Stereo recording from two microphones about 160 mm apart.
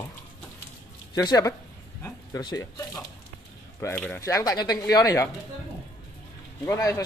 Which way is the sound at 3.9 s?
10° left (ahead or behind).